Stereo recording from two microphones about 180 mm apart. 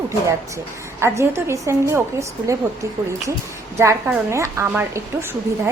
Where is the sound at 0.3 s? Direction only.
15° right (ahead or behind).